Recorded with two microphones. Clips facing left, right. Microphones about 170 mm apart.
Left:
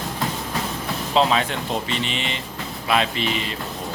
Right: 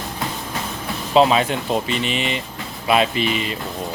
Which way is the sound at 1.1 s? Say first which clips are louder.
Right 5 dB; 10° right (ahead or behind).